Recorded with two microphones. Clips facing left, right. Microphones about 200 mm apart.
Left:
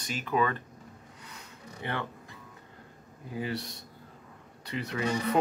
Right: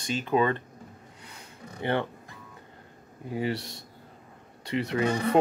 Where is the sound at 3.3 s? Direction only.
30° right (ahead or behind).